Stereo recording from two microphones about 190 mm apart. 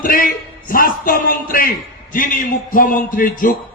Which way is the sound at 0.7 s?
50° left (ahead or behind).